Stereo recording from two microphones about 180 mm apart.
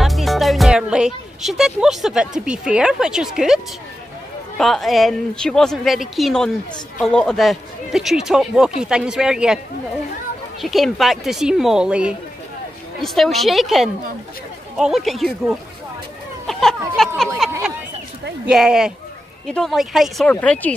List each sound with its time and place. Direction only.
0.0 s a woman's voice: centre (ahead or behind)
10.6 s a woman's voice: centre (ahead or behind)
18.5 s a woman's voice: 5° right (ahead or behind)